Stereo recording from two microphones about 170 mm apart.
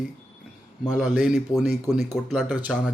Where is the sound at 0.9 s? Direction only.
5° right (ahead or behind).